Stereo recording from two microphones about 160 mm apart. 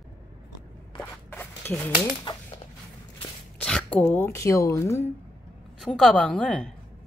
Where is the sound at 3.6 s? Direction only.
5° left (ahead or behind).